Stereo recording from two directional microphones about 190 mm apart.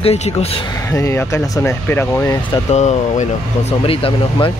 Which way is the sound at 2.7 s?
35° left (ahead or behind).